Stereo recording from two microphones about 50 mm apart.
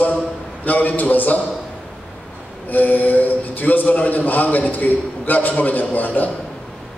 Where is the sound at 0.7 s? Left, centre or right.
Left.